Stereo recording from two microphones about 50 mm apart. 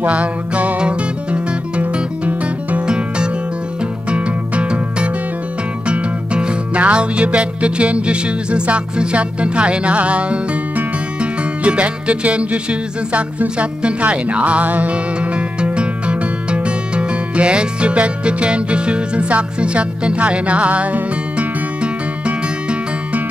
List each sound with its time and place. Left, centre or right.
0.0 s music: right
4.1 s music: right